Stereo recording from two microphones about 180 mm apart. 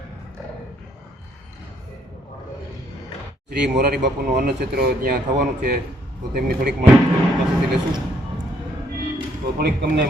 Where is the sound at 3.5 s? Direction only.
65° right (ahead or behind).